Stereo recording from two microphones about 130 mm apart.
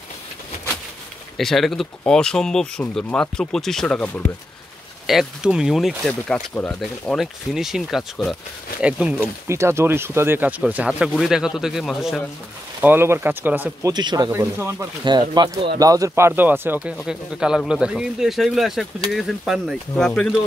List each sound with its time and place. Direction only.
1.3 s speech: centre (ahead or behind)
5.0 s speech: 5° right (ahead or behind); by 6.8 s 10° left (ahead or behind)
6.8 s speech: centre (ahead or behind)
9.5 s speech: 20° right (ahead or behind)
10.6 s speech: 5° right (ahead or behind)
12.8 s speech: 15° right (ahead or behind)
13.8 s speech: 30° right (ahead or behind)
14.3 s speech: 20° right (ahead or behind)
15.0 s speech: 35° right (ahead or behind); by 16.9 s 15° right (ahead or behind)
16.9 s speech: 5° right (ahead or behind)